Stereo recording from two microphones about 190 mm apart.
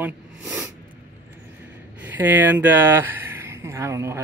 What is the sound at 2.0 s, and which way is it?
Speech, 10° right (ahead or behind).